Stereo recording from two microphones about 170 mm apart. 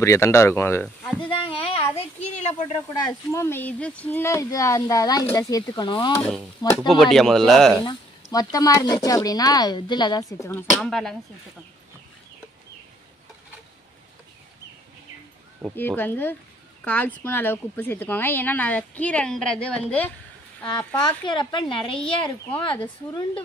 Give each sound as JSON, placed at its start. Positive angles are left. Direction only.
{"t": 0.0, "sound": "a woman's voice", "side_deg": 15}
{"t": 1.4, "sound": "speech", "side_deg": 35}
{"t": 3.1, "sound": "a woman's voice", "side_deg": 15}
{"t": 6.9, "sound": "a man's voice", "side_deg": 0}
{"t": 8.3, "sound": "a woman's voice", "side_deg": 20}
{"t": 10.8, "sound": "a man's voice", "side_deg": 0}
{"t": 15.7, "sound": "a woman's voice", "side_deg": 10}
{"t": 20.6, "sound": "a woman's voice", "side_deg": 25}